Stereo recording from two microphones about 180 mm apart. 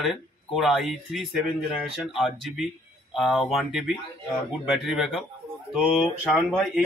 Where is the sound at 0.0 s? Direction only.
Centre (ahead or behind).